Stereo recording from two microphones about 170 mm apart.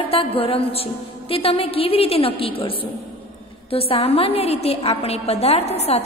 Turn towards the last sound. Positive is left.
turn(degrees=40)  # may be behind; listen again after turning